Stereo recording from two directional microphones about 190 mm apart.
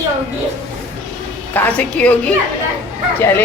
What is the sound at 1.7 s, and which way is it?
Speech, 5° left (ahead or behind).